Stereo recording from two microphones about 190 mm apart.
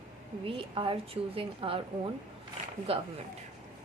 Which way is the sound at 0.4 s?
25° right (ahead or behind).